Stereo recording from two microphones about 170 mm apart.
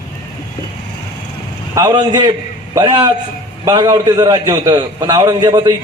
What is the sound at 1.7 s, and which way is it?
A man's voice, 20° right (ahead or behind).